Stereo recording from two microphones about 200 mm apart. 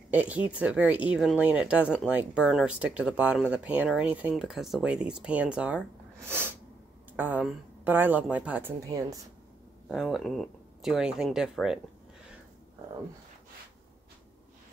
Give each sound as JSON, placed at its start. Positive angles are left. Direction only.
{"t": 0.1, "sound": "a woman's voice", "side_deg": -5}
{"t": 9.8, "sound": "speech", "side_deg": 0}